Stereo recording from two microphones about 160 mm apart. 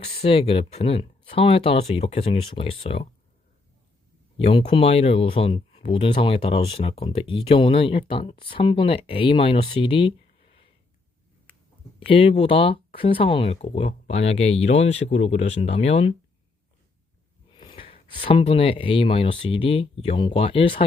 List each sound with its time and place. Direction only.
0.0 s speech: 40° left (ahead or behind)
4.4 s speech: 40° left (ahead or behind)
11.9 s speech: 35° left (ahead or behind)
17.6 s speech: 35° left (ahead or behind)